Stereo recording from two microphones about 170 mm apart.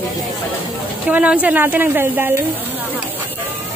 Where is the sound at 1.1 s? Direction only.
5° right (ahead or behind).